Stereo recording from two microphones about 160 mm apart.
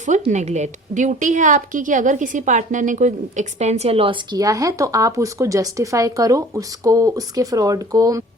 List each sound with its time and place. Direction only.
0.0 s a woman's voice: 50° right (ahead or behind); by 8.2 s 25° right (ahead or behind)